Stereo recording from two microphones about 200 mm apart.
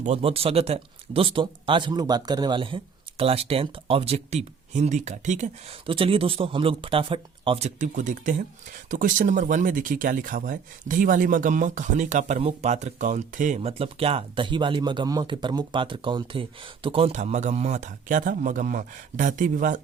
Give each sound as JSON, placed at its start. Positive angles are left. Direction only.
{"t": 0.0, "sound": "speech", "side_deg": -30}